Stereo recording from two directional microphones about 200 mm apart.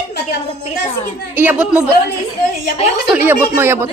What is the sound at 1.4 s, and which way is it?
Speech, 10° right (ahead or behind).